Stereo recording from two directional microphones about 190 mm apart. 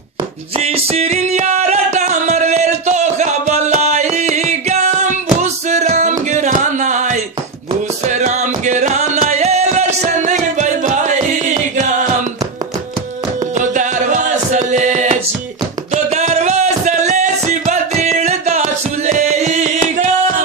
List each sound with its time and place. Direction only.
0.6 s music: 35° right (ahead or behind)
13.6 s music: 40° right (ahead or behind)